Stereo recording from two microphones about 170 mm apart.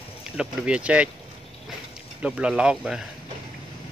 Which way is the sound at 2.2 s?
5° right (ahead or behind).